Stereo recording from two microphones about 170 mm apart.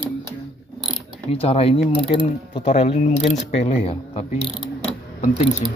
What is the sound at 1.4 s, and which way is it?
Speech, 35° left (ahead or behind).